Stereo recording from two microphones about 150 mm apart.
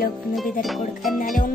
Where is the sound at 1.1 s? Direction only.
65° left (ahead or behind).